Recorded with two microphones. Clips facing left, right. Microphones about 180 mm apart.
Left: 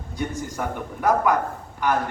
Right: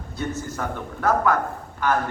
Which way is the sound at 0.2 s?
15° left (ahead or behind).